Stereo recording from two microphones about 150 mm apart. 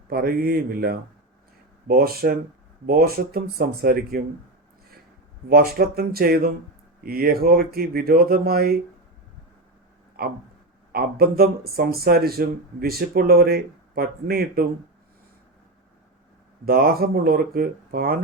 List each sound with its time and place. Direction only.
0.1 s speech: 80° right
5.5 s speech: 90° right
10.2 s a sound: 80° right
10.9 s speech: 90° right
16.6 s speech: 85° right